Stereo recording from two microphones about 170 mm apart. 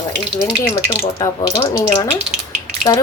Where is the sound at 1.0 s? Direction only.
25° left (ahead or behind).